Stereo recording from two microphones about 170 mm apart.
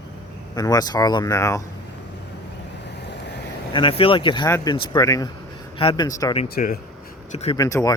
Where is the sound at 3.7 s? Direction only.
30° left (ahead or behind).